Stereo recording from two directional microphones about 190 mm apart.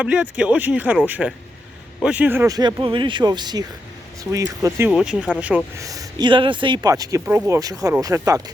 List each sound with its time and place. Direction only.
0.0 s speech: 5° right (ahead or behind)
4.9 s speech: 5° right (ahead or behind)